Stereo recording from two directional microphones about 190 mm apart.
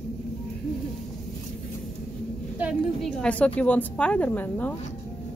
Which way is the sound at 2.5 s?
5° right (ahead or behind).